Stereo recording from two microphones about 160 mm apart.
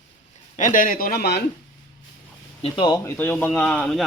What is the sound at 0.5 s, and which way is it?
Speech, 55° left (ahead or behind).